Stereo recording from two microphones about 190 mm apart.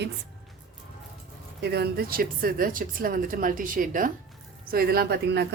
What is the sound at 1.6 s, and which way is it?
A woman's voice, 60° right (ahead or behind).